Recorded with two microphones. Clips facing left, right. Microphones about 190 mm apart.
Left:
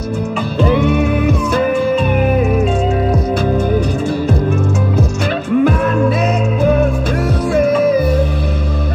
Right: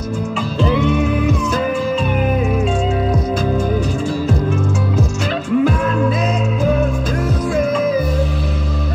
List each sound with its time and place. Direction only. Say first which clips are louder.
0.6 s music: left 3 dB; 55° left (ahead or behind)
5.6 s music: left 3 dB; 55° left (ahead or behind)